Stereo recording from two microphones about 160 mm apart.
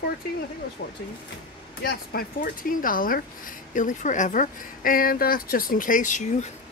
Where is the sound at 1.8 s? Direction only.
70° left (ahead or behind).